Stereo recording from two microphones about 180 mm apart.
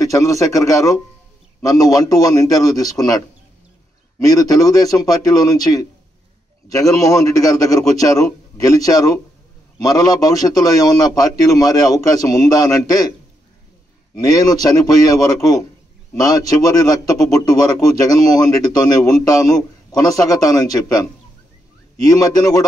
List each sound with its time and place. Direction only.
0.0 s a man's voice: 20° left (ahead or behind)
4.2 s a man's voice: 20° left (ahead or behind)
14.2 s a man's voice: 20° left (ahead or behind)